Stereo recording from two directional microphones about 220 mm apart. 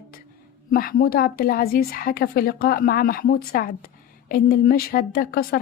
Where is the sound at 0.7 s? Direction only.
40° left (ahead or behind).